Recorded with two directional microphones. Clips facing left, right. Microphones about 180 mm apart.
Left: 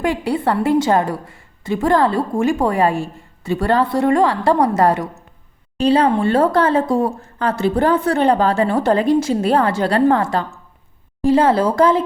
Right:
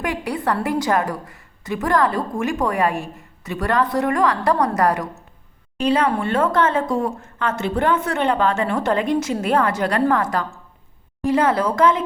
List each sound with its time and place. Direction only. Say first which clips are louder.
0.0 s a woman's voice: left 5 dB; 30° left (ahead or behind)